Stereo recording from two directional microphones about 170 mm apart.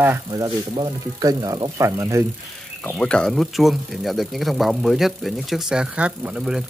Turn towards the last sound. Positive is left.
turn(degrees=-5)  # may be behind; listen again after turning